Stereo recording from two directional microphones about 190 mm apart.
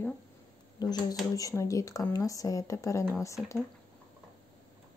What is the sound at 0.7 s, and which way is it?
Speech, 20° left (ahead or behind).